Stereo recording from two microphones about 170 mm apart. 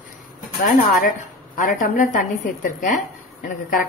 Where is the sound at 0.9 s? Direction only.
50° left (ahead or behind).